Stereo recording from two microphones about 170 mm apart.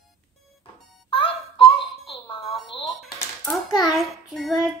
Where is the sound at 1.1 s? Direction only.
30° left (ahead or behind).